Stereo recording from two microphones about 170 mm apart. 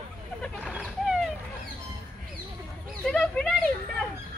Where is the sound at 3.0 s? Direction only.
5° left (ahead or behind).